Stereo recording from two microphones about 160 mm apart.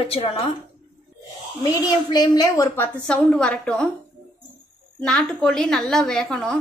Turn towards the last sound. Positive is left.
turn(degrees=5)  # may be behind; listen again after turning